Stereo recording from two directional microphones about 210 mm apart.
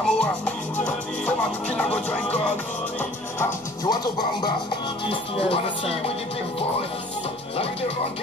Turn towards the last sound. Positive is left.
turn(degrees=25)  # may be behind; listen again after turning